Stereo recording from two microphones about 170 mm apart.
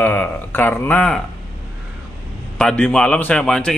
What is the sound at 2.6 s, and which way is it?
A man's voice, 5° left (ahead or behind).